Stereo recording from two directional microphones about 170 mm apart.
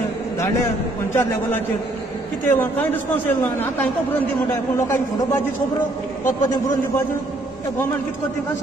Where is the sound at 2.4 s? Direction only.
10° left (ahead or behind).